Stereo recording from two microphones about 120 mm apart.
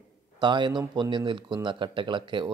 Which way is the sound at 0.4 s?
40° right (ahead or behind).